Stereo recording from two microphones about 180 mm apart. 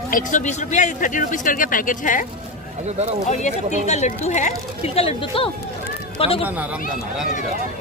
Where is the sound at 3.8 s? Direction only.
40° left (ahead or behind).